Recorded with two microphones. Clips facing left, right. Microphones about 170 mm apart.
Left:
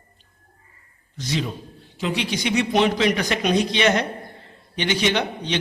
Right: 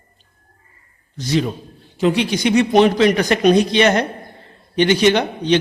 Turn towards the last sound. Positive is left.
turn(degrees=-50)  # may be behind; listen again after turning